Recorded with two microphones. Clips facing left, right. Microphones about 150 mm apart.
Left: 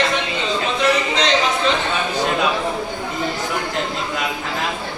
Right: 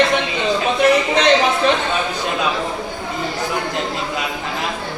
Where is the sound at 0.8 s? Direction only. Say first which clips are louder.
Right 4 dB; 55° right (ahead or behind).